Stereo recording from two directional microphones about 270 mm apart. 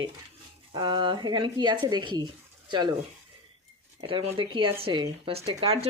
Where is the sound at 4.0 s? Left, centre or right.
Centre.